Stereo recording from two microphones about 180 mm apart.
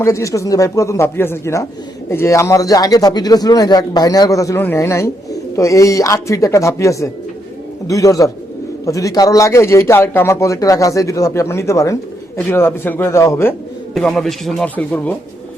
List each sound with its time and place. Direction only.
0.0 s a man's voice: 15° left (ahead or behind)
13.9 s speech: centre (ahead or behind)